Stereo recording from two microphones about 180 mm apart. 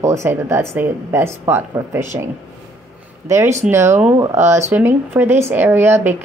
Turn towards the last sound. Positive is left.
turn(degrees=-10)  # may be behind; listen again after turning